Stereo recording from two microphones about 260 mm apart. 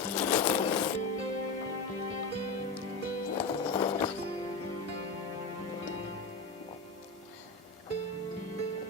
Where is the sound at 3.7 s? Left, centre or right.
Centre.